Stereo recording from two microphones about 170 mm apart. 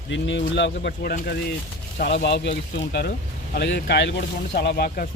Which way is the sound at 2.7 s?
80° left.